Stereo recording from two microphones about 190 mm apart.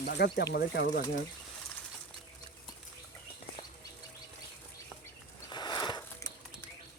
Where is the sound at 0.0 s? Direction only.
60° left (ahead or behind).